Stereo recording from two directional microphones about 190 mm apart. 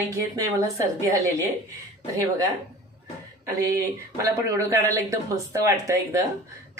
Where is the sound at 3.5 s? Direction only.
15° right (ahead or behind).